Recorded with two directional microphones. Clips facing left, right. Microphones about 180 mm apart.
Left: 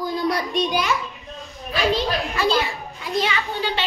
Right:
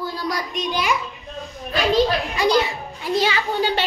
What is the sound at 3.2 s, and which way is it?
Speech, 35° right (ahead or behind).